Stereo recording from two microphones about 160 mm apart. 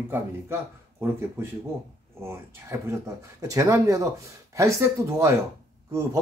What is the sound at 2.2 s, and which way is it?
Speech, 15° right (ahead or behind).